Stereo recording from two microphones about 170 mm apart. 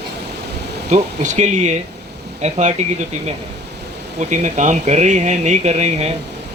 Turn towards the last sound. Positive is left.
turn(degrees=-40)  # may be behind; listen again after turning